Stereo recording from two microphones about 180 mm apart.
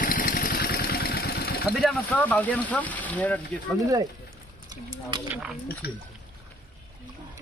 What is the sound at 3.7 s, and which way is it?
Speech, 20° right (ahead or behind).